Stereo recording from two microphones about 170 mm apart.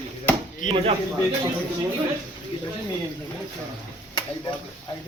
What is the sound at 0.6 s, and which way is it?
Speech, 50° left (ahead or behind).